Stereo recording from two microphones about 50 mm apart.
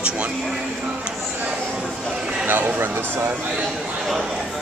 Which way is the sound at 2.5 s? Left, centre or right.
Right.